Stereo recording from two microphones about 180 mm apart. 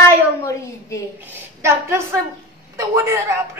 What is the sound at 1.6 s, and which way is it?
A woman's voice, 15° right (ahead or behind).